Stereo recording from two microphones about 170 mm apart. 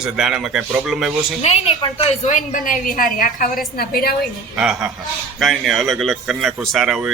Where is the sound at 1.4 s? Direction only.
35° left (ahead or behind).